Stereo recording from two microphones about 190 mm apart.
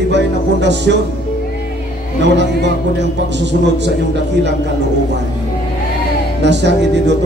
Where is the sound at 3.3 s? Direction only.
65° right (ahead or behind).